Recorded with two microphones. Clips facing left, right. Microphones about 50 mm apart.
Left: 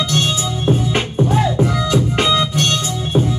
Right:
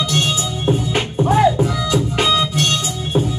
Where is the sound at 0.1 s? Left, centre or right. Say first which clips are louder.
Left 1 dB; right.